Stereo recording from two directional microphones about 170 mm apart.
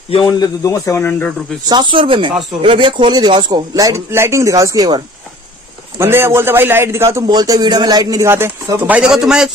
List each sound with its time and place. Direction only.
0.1 s speech: 25° left (ahead or behind)
1.7 s a man's voice: 25° right (ahead or behind); by 9.5 s 5° right (ahead or behind)